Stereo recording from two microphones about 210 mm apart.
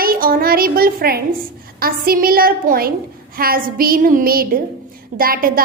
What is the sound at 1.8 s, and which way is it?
A woman's voice, 45° right (ahead or behind).